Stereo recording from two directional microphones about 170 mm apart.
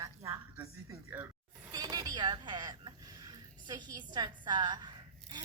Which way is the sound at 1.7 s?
20° right (ahead or behind).